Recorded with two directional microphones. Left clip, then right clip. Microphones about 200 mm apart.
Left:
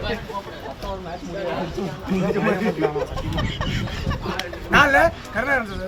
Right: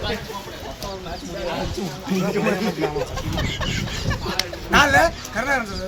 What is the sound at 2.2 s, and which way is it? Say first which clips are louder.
Speech: left 1 dB; centre (ahead or behind).